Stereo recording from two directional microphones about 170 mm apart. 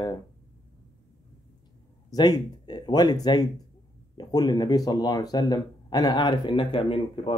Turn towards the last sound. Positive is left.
turn(degrees=30)  # may be behind; listen again after turning